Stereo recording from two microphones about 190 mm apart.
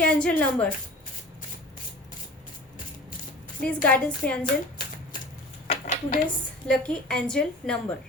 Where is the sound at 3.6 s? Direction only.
5° left (ahead or behind).